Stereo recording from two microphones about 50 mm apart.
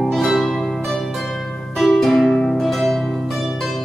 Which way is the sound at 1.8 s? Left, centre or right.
Centre.